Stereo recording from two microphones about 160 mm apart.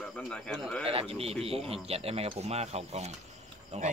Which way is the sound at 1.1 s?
40° right (ahead or behind).